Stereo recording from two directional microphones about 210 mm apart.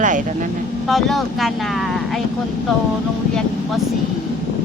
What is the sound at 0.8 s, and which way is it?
Speech, centre (ahead or behind).